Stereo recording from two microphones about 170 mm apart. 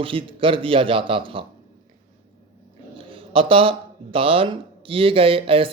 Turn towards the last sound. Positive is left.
turn(degrees=-30)  # may be behind; listen again after turning